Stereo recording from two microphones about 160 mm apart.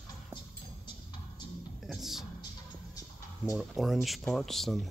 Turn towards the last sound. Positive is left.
turn(degrees=0)  # may be behind; listen again after turning